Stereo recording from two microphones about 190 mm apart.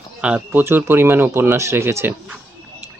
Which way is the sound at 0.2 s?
5° right (ahead or behind).